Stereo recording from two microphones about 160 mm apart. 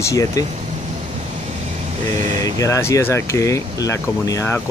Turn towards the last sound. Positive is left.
turn(degrees=20)  # may be behind; listen again after turning